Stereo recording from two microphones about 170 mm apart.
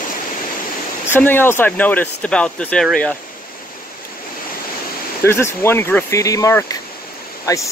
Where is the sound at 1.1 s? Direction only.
10° left (ahead or behind).